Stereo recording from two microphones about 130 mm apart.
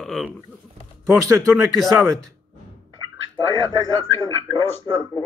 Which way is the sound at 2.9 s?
35° right (ahead or behind).